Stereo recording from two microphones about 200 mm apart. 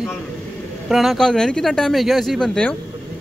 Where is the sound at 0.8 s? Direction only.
Centre (ahead or behind).